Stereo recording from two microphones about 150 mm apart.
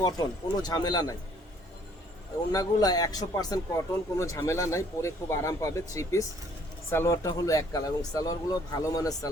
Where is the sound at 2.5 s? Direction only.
25° left (ahead or behind).